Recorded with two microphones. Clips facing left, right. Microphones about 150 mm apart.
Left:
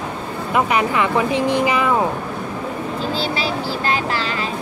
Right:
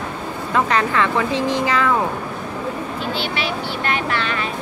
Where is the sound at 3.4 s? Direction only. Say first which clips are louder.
Left 2 dB; 30° left (ahead or behind).